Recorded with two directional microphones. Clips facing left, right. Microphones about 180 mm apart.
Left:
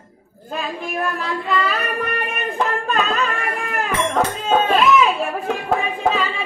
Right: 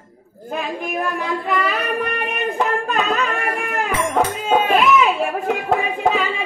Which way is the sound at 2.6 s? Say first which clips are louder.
Left 1 dB; 20° right (ahead or behind).